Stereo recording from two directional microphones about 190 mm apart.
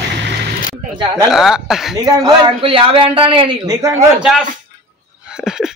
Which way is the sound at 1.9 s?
25° right (ahead or behind).